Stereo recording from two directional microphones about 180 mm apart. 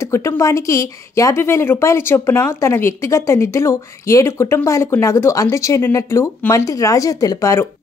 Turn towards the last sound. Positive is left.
turn(degrees=15)  # may be behind; listen again after turning